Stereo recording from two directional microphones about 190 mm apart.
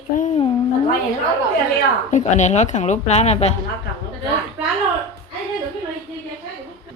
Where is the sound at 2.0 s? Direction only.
40° left (ahead or behind).